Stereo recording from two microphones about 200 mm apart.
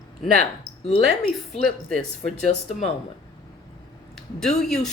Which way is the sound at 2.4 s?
35° left (ahead or behind).